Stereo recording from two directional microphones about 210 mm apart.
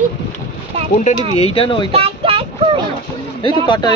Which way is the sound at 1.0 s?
30° left (ahead or behind).